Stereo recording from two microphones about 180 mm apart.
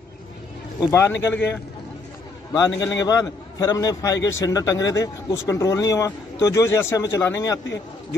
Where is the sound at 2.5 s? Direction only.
20° left (ahead or behind).